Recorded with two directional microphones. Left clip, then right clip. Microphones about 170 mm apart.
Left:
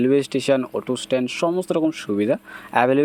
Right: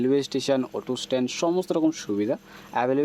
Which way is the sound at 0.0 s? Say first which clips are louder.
Left 5 dB; 10° left (ahead or behind).